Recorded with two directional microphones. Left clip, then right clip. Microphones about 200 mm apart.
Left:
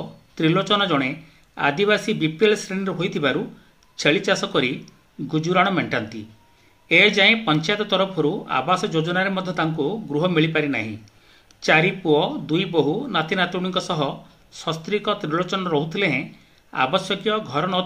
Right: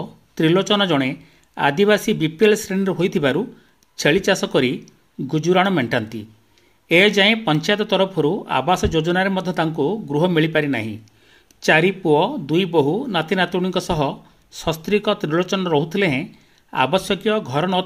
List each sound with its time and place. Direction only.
0.3 s speech: 50° right (ahead or behind)